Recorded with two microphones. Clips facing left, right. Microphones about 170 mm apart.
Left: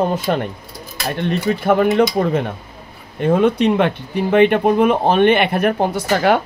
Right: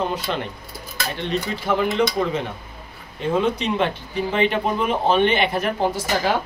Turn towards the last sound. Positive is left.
turn(degrees=60)  # may be behind; listen again after turning